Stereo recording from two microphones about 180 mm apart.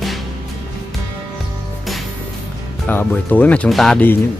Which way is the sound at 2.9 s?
10° left (ahead or behind).